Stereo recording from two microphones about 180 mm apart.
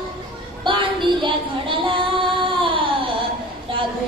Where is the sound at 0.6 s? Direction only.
25° right (ahead or behind).